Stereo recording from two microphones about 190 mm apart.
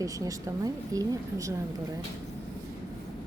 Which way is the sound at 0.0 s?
15° right (ahead or behind).